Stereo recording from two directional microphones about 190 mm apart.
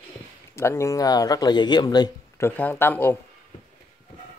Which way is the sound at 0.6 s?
15° left (ahead or behind).